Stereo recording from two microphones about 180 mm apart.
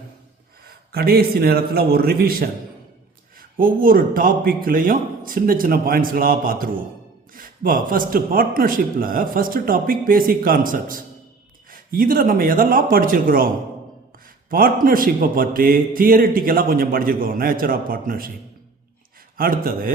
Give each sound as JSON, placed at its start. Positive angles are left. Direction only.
{"t": 0.9, "sound": "a man's voice", "side_deg": -60}
{"t": 3.6, "sound": "a man's voice", "side_deg": -50}
{"t": 14.5, "sound": "a man's voice", "side_deg": -55}
{"t": 19.4, "sound": "a man's voice", "side_deg": -55}